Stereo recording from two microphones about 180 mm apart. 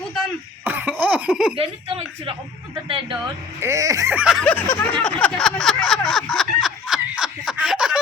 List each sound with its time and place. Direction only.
0.6 s cough: 10° right (ahead or behind)
1.5 s speech: 30° right (ahead or behind)
3.6 s fowl: 15° right (ahead or behind)
4.4 s speech: 10° left (ahead or behind)
5.0 s a sound: 5° left (ahead or behind)